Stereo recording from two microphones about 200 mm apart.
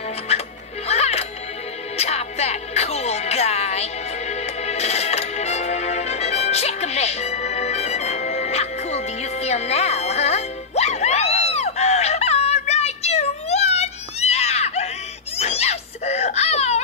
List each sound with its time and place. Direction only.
0.3 s music: 30° left (ahead or behind)
15.3 s wail: 30° left (ahead or behind)